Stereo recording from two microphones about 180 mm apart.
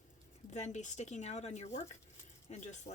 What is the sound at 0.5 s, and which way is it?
Speech, 40° left (ahead or behind).